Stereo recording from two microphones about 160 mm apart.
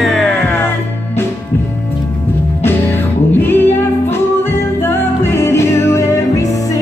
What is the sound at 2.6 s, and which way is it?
Music, 15° left (ahead or behind).